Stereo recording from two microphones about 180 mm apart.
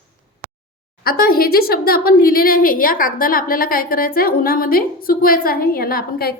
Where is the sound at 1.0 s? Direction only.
55° left (ahead or behind).